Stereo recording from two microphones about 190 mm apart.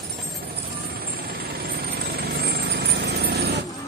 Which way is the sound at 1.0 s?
50° right (ahead or behind).